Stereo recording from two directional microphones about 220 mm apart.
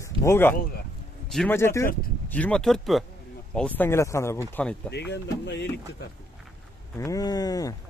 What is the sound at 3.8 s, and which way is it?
Speech, 10° left (ahead or behind).